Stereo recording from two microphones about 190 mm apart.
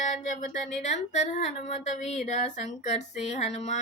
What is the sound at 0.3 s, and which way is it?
Speech, 40° left (ahead or behind).